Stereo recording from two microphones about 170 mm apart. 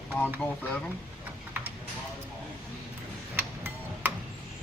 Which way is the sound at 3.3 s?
15° right (ahead or behind).